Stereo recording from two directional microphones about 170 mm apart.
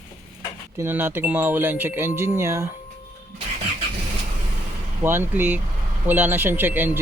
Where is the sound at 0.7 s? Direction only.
15° right (ahead or behind).